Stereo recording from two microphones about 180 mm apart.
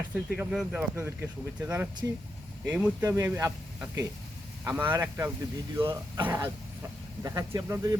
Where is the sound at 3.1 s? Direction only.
15° right (ahead or behind).